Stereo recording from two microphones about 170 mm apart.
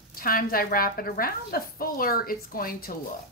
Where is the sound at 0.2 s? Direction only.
60° left (ahead or behind).